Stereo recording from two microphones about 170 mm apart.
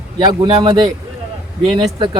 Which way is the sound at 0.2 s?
25° right (ahead or behind).